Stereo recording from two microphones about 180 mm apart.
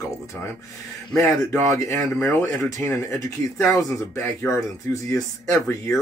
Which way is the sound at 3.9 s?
15° left (ahead or behind).